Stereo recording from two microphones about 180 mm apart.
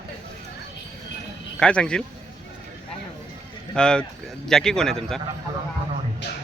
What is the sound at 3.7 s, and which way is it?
Speech, 5° left (ahead or behind).